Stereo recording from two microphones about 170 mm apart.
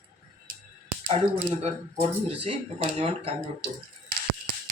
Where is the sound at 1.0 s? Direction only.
35° right (ahead or behind).